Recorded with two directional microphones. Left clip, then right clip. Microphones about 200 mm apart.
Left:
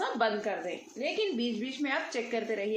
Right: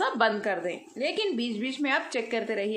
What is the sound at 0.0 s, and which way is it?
A woman's voice, 35° right (ahead or behind).